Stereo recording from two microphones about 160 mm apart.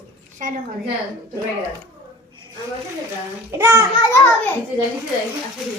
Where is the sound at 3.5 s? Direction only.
15° right (ahead or behind).